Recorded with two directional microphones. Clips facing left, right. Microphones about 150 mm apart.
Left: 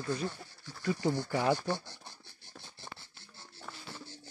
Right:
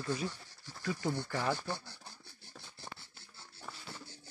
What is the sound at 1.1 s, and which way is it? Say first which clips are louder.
Speech: left 5 dB; 15° left (ahead or behind).